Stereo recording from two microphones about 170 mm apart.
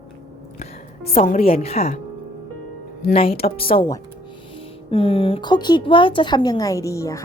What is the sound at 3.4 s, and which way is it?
A woman's voice, 35° left (ahead or behind).